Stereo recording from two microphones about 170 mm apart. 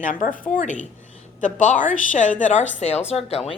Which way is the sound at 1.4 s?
50° left (ahead or behind).